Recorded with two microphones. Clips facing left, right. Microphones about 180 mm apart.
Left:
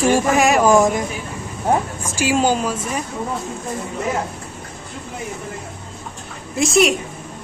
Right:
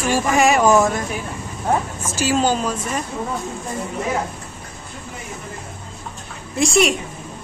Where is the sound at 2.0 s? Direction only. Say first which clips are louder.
Even; 15° left (ahead or behind).